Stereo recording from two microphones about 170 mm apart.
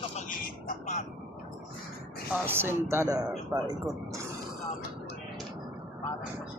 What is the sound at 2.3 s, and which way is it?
Speech, 15° right (ahead or behind).